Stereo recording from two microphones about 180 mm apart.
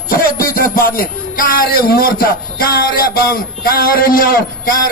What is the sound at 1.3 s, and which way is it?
Speech, 50° left (ahead or behind).